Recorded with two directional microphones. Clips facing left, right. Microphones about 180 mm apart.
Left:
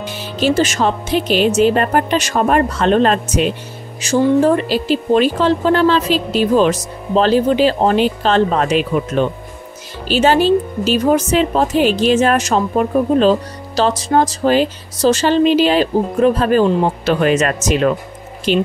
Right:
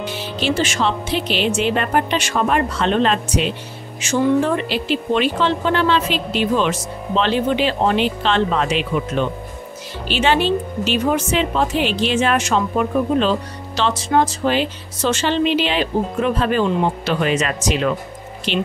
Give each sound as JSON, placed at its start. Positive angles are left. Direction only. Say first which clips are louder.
{"t": 0.0, "sound": "a woman's voice", "louder": "left 4 dB", "side_deg": 45}